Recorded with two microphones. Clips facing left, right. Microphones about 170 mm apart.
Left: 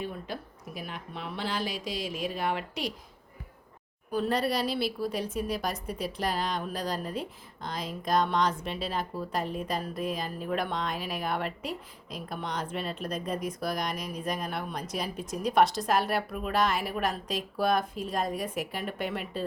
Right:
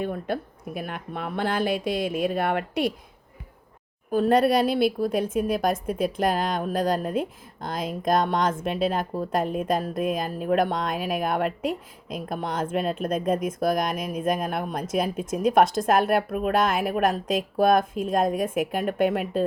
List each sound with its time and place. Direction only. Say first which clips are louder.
0.0 s a woman's voice: right 8 dB; 55° right (ahead or behind)
4.1 s a woman's voice: right 8 dB; 50° right (ahead or behind)